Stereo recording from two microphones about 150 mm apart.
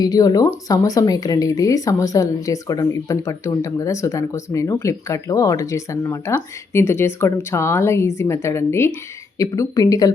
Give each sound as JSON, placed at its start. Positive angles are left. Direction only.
{"t": 0.0, "sound": "speech", "side_deg": 25}